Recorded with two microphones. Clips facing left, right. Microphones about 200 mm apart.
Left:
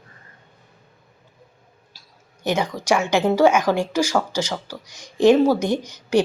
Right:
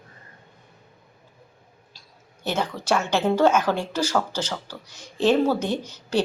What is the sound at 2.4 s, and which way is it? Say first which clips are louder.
A woman's voice: left 4 dB; 15° left (ahead or behind).